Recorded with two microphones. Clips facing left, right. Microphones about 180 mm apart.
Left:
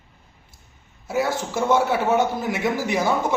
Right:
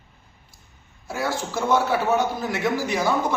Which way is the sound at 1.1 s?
20° left (ahead or behind).